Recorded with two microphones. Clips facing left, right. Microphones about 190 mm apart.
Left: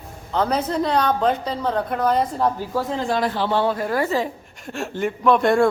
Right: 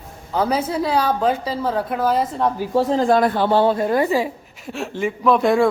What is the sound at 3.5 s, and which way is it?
Speech, 30° right (ahead or behind).